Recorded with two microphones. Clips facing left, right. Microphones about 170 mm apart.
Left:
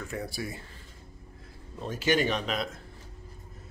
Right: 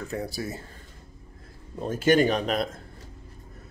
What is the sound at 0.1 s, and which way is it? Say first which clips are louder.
Speech: right 4 dB; 35° right (ahead or behind).